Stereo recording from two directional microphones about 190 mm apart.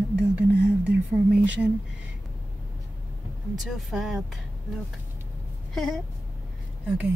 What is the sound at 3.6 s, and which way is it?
Speech, centre (ahead or behind).